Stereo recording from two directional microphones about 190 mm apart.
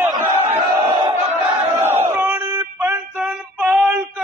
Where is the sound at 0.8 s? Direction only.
25° right (ahead or behind).